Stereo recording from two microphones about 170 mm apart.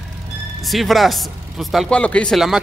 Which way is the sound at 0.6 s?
Centre (ahead or behind).